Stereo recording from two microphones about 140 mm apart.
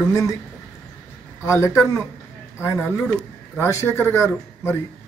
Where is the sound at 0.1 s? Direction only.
25° left (ahead or behind).